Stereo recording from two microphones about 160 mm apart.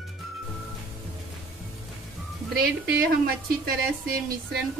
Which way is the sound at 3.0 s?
70° right (ahead or behind).